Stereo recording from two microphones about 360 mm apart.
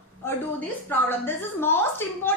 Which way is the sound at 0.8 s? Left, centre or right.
Centre.